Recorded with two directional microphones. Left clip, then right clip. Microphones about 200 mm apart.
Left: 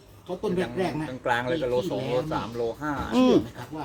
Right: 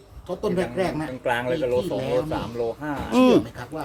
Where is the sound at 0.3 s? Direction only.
10° right (ahead or behind).